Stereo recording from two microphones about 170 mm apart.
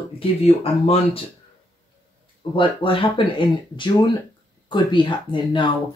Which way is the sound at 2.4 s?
30° left (ahead or behind).